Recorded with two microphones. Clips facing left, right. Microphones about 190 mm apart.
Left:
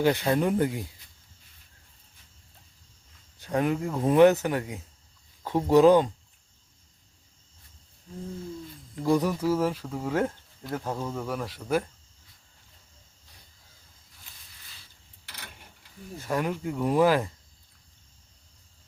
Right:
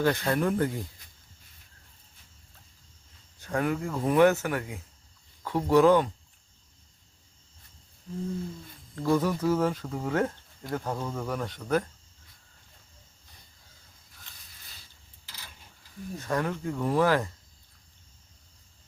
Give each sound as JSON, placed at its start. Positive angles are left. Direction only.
{"t": 0.0, "sound": "speech", "side_deg": 15}
{"t": 3.3, "sound": "speech", "side_deg": 15}
{"t": 9.0, "sound": "speech", "side_deg": 15}
{"t": 16.2, "sound": "speech", "side_deg": 15}